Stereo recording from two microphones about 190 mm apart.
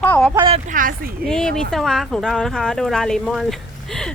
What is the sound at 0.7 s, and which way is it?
Speech, 45° right (ahead or behind).